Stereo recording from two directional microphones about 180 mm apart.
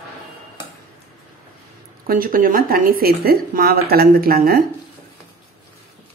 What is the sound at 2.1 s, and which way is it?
A woman's voice, 50° right (ahead or behind).